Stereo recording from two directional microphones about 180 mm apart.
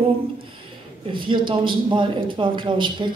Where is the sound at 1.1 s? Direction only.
25° right (ahead or behind).